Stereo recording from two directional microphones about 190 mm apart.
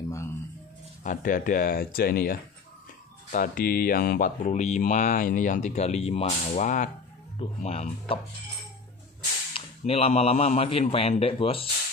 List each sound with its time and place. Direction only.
0.1 s music: 15° left (ahead or behind)
1.0 s speech: 45° left (ahead or behind)
9.5 s speech: 30° left (ahead or behind)